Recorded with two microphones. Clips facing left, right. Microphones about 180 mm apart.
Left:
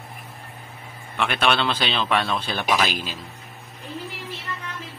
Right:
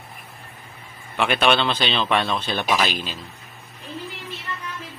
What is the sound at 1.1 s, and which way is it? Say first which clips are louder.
Speech: right 3 dB; centre (ahead or behind).